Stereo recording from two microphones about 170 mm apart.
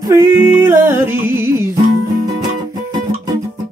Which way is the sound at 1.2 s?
15° right (ahead or behind).